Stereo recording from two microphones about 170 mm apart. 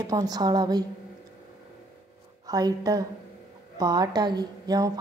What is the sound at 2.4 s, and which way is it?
A woman's voice, 20° right (ahead or behind).